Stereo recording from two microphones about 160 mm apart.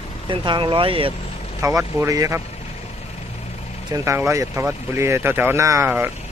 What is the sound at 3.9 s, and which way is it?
Speech, 15° right (ahead or behind).